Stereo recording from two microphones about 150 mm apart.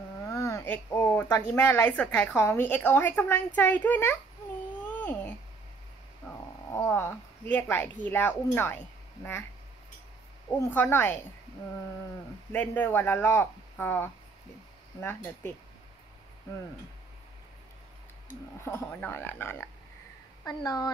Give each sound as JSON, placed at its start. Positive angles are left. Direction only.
{"t": 0.3, "sound": "speech", "side_deg": 20}
{"t": 4.8, "sound": "a sound", "side_deg": 10}
{"t": 6.2, "sound": "speech", "side_deg": 15}
{"t": 10.7, "sound": "speech", "side_deg": 15}
{"t": 12.5, "sound": "speech", "side_deg": 10}
{"t": 18.3, "sound": "speech", "side_deg": 15}
{"t": 20.4, "sound": "speech", "side_deg": 25}